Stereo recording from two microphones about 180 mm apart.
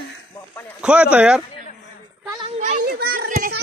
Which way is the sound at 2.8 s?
60° right (ahead or behind).